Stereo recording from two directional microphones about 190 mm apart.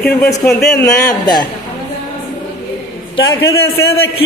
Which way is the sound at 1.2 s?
20° left (ahead or behind).